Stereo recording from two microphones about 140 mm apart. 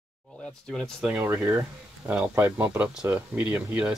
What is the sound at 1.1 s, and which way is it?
Speech, 15° right (ahead or behind).